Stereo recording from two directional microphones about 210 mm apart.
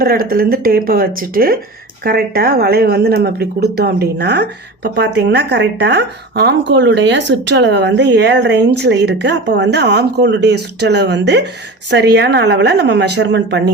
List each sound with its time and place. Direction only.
0.0 s speech: 45° right (ahead or behind)